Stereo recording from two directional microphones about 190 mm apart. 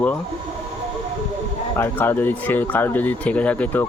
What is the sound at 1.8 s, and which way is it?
Speech, 10° left (ahead or behind).